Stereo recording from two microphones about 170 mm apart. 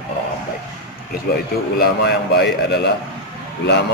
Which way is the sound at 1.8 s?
75° left (ahead or behind).